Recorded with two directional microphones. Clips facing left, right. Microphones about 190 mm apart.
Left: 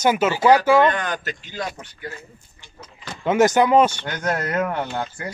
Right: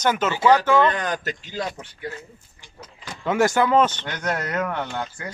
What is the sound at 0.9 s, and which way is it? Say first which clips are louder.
Speech: left 1 dB; 35° right (ahead or behind).